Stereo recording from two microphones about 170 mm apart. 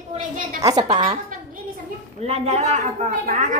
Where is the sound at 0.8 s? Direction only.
35° right (ahead or behind).